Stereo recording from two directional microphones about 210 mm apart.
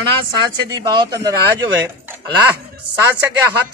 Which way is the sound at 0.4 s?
20° right (ahead or behind).